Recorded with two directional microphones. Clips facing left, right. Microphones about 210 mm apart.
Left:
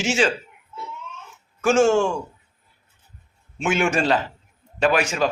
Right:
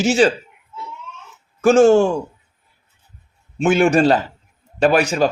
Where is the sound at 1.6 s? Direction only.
35° right (ahead or behind).